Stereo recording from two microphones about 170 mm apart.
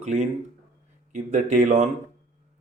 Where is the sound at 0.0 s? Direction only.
45° right (ahead or behind).